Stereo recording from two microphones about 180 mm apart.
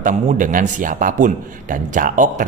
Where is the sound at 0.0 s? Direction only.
45° right (ahead or behind).